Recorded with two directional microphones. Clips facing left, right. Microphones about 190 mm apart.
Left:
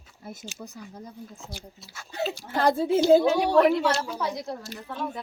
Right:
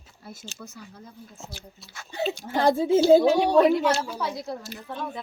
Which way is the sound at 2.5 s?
20° right (ahead or behind).